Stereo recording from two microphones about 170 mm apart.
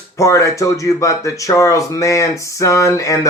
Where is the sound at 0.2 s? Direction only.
20° left (ahead or behind).